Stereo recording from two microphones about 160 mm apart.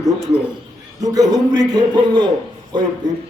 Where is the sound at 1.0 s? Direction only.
25° right (ahead or behind).